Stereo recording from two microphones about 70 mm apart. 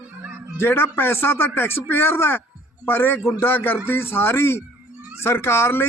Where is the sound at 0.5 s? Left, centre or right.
Left.